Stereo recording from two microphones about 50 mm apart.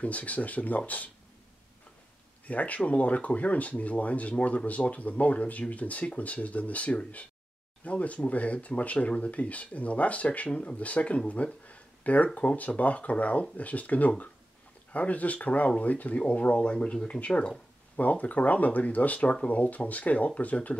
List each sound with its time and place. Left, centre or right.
0.0 s speech: left
2.4 s speech: left
11.6 s a sound: left
12.4 s speech: left